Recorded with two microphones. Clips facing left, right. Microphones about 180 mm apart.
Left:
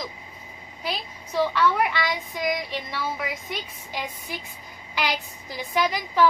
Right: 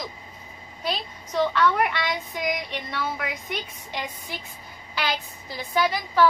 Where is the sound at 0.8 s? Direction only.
10° left (ahead or behind).